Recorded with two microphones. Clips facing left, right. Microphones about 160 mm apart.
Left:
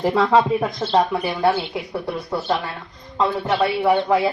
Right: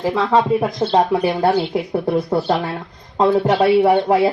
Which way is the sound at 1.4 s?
40° right (ahead or behind).